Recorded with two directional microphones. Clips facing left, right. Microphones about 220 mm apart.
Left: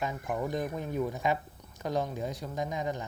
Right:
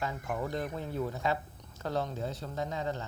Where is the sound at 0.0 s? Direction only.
15° left (ahead or behind).